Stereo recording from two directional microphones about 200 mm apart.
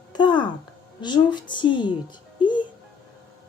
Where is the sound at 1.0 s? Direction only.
20° left (ahead or behind).